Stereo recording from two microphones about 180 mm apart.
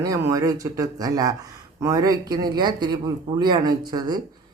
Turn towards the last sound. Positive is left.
turn(degrees=-25)  # may be behind; listen again after turning